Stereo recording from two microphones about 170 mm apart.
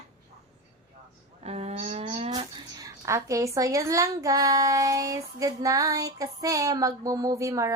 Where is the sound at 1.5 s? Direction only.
40° right (ahead or behind).